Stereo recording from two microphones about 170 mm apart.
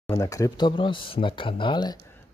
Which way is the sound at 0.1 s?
20° left (ahead or behind).